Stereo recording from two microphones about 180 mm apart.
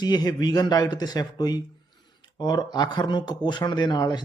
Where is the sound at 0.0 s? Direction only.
25° left (ahead or behind).